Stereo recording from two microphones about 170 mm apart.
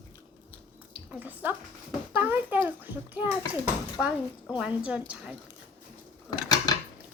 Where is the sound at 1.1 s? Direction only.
10° right (ahead or behind).